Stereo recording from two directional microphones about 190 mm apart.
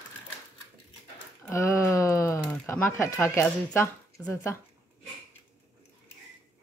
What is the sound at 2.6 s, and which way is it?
Speech, 15° left (ahead or behind).